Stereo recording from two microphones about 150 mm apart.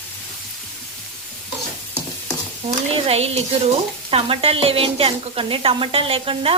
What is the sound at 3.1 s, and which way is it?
Speech, 45° right (ahead or behind).